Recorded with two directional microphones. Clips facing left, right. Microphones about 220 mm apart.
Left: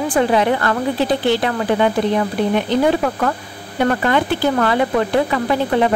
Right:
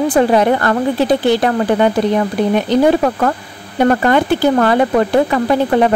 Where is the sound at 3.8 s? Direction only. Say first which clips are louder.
Right 4 dB; 45° right (ahead or behind).